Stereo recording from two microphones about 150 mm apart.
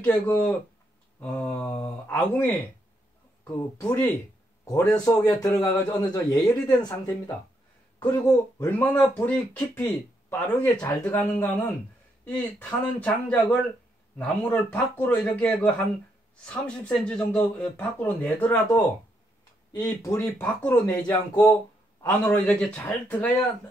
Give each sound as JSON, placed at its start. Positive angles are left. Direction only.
{"t": 0.0, "sound": "speech", "side_deg": 10}
{"t": 3.5, "sound": "a man's voice", "side_deg": 20}
{"t": 8.6, "sound": "speech", "side_deg": 10}
{"t": 19.7, "sound": "speech", "side_deg": 25}
{"t": 22.2, "sound": "speech", "side_deg": 5}